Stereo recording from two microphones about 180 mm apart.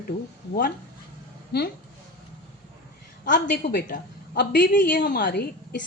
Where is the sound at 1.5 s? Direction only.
65° left (ahead or behind).